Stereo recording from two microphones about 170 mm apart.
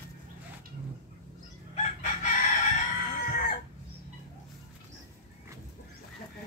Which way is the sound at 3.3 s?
55° left (ahead or behind).